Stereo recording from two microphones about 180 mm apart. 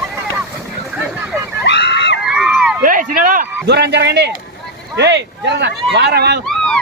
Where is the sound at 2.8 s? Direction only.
50° right (ahead or behind).